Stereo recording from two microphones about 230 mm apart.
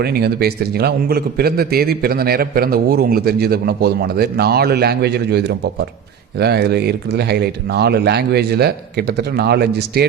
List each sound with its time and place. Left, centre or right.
0.0 s a man's voice: right